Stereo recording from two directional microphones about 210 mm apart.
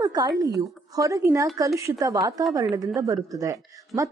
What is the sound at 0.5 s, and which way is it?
A woman's voice, 15° right (ahead or behind).